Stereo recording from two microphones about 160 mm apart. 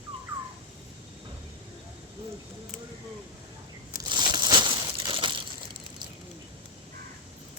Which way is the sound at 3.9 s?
25° right (ahead or behind).